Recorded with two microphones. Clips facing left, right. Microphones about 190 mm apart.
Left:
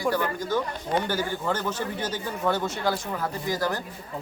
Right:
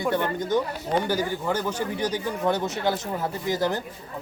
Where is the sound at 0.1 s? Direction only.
20° right (ahead or behind).